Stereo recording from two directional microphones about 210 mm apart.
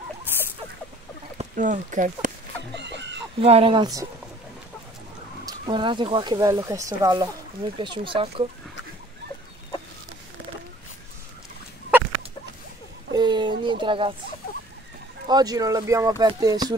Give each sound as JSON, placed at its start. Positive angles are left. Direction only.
{"t": 0.3, "sound": "rodents", "side_deg": -10}
{"t": 1.4, "sound": "speech", "side_deg": -35}
{"t": 2.7, "sound": "chicken", "side_deg": -55}
{"t": 3.3, "sound": "speech", "side_deg": -25}
{"t": 5.4, "sound": "speech", "side_deg": -20}
{"t": 13.1, "sound": "a sound", "side_deg": -20}
{"t": 15.2, "sound": "speech", "side_deg": -20}